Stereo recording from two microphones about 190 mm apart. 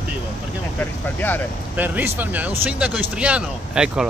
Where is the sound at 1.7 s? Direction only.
10° right (ahead or behind).